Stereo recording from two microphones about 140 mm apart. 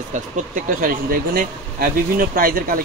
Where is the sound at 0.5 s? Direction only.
80° right.